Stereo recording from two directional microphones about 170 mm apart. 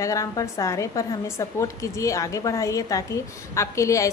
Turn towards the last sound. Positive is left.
turn(degrees=20)  # may be behind; listen again after turning